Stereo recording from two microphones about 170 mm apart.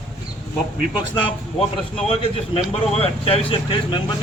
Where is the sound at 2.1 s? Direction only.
35° left (ahead or behind).